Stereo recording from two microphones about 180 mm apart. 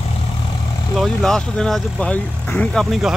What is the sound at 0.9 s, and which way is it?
Speech, centre (ahead or behind).